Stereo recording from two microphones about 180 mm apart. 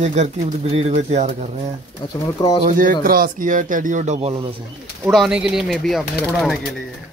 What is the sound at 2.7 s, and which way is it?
Speech, 50° right (ahead or behind).